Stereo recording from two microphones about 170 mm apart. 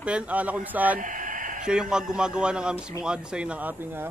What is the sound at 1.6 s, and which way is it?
A man's voice, 5° right (ahead or behind).